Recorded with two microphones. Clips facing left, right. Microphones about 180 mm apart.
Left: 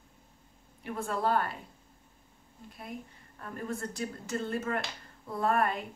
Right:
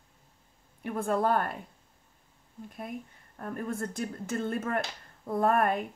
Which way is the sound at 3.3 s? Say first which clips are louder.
Right 3 dB; 55° right (ahead or behind).